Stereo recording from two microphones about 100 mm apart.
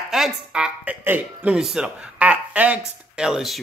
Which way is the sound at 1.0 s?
15° right (ahead or behind).